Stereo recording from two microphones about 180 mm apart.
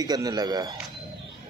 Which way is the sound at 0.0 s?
20° right (ahead or behind).